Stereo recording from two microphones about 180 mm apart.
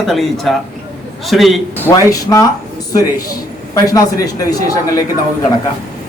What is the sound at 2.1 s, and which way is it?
Speech, 20° left (ahead or behind).